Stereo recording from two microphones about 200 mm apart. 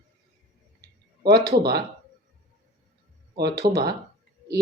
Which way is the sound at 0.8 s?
55° right (ahead or behind).